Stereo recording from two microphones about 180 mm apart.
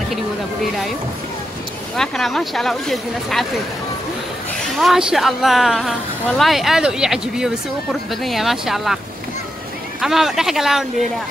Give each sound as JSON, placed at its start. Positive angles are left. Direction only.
{"t": 2.0, "sound": "a woman's voice", "side_deg": 0}
{"t": 4.6, "sound": "a woman's voice", "side_deg": 0}